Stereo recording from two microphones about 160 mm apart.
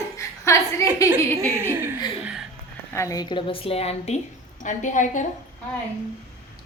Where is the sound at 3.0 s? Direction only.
20° left (ahead or behind); by 4.1 s 40° left (ahead or behind).